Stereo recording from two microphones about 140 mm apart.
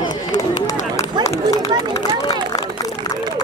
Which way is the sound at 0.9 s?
25° left (ahead or behind).